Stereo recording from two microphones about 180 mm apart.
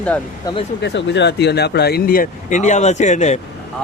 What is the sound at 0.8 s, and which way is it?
Speech, 75° left (ahead or behind).